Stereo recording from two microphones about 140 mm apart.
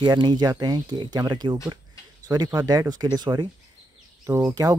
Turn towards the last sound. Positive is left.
turn(degrees=-25)  # may be behind; listen again after turning